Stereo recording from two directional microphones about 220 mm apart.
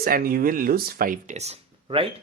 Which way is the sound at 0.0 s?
40° right (ahead or behind).